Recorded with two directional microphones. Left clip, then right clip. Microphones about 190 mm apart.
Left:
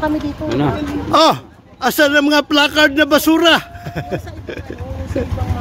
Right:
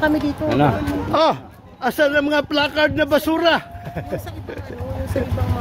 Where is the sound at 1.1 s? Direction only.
30° left (ahead or behind).